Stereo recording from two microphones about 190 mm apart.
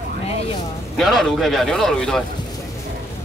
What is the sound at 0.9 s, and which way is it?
Speech, centre (ahead or behind).